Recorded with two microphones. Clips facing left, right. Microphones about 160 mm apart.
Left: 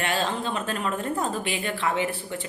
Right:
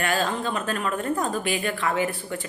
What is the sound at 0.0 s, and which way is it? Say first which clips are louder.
A woman's voice: right 2 dB; 25° left (ahead or behind).